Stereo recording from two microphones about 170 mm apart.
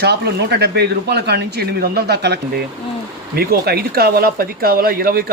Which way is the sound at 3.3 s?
65° right (ahead or behind).